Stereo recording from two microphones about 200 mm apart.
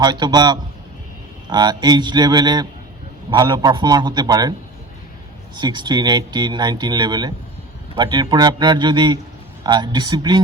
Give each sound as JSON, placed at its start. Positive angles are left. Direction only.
{"t": 0.0, "sound": "speech", "side_deg": -20}
{"t": 5.5, "sound": "speech", "side_deg": -20}